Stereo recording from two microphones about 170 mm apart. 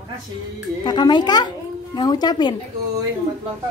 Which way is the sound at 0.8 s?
25° left (ahead or behind).